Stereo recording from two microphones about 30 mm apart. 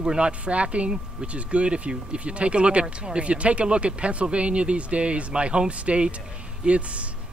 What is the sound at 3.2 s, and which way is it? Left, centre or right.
Speech, right.